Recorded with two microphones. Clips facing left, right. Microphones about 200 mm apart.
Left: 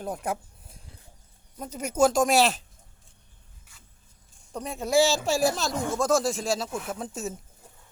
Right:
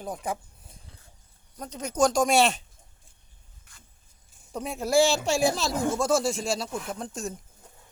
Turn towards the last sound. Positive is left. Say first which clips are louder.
# left 1 dB
turn(degrees=5)  # may be behind; listen again after turning